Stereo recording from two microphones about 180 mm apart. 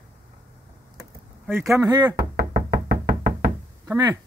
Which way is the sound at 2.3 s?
65° right (ahead or behind).